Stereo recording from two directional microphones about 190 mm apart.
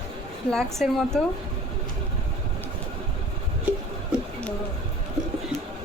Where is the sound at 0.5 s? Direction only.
Centre (ahead or behind).